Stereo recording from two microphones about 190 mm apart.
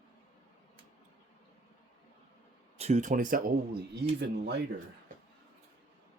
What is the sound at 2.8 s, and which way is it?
Speech, 35° right (ahead or behind).